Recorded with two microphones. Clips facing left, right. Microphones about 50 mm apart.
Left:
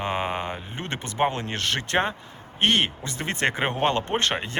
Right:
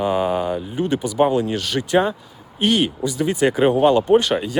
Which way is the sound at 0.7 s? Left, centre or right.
Left.